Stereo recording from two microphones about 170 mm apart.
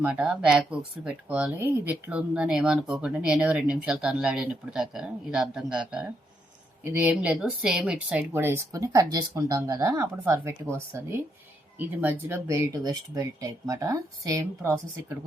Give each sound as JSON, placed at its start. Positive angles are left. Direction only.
{"t": 0.0, "sound": "speech", "side_deg": -5}
{"t": 7.0, "sound": "speech", "side_deg": -5}